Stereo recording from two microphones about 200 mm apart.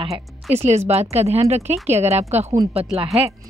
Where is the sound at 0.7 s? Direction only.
35° right (ahead or behind).